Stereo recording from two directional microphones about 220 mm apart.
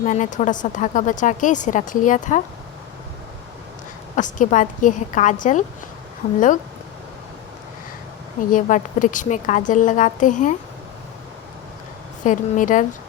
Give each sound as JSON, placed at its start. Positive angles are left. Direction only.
{"t": 0.0, "sound": "speech", "side_deg": 35}
{"t": 4.1, "sound": "a woman's voice", "side_deg": 35}
{"t": 8.5, "sound": "speech", "side_deg": 35}
{"t": 12.2, "sound": "speech", "side_deg": 35}